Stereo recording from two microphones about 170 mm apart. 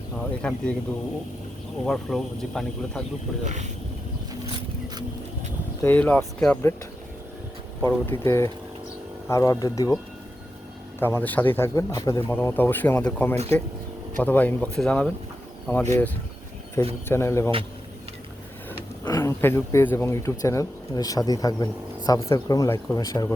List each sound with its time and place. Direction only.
0.4 s speech: 5° left (ahead or behind)
1.8 s speech: centre (ahead or behind)
3.4 s speech: 45° right (ahead or behind)
5.8 s speech: 10° left (ahead or behind)
7.8 s speech: 15° left (ahead or behind)
11.0 s speech: 10° left (ahead or behind)
17.1 s speech: 15° left (ahead or behind)
19.0 s speech: 20° left (ahead or behind)